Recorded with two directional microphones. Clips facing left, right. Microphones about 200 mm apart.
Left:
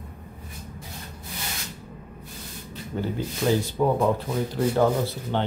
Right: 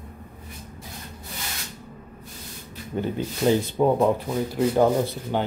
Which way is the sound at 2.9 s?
20° right (ahead or behind).